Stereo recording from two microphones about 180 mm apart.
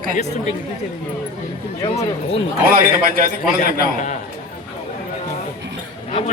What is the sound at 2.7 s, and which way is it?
Speech, 55° right (ahead or behind).